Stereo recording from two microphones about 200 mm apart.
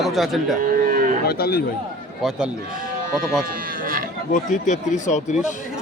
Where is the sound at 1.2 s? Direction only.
50° left (ahead or behind).